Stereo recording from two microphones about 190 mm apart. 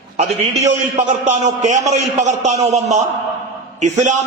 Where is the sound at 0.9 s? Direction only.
40° right (ahead or behind).